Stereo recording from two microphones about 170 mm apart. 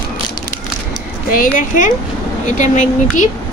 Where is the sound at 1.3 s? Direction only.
50° left (ahead or behind).